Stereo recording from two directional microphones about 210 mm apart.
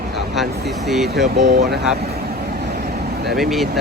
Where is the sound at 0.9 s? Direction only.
Centre (ahead or behind).